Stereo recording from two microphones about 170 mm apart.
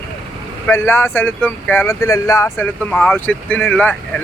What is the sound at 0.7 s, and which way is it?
Speech, 15° left (ahead or behind).